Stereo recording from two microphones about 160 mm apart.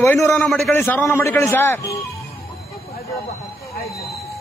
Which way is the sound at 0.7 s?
10° left (ahead or behind).